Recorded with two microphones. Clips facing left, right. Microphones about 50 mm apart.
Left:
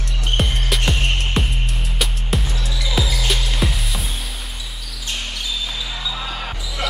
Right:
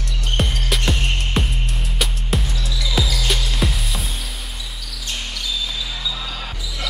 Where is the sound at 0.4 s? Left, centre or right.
Centre.